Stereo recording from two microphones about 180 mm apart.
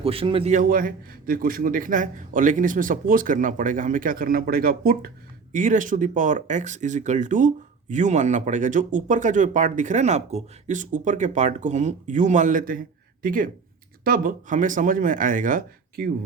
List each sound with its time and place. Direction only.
0.0 s a man's voice: 30° right (ahead or behind)
0.5 s a man's voice: 50° right (ahead or behind)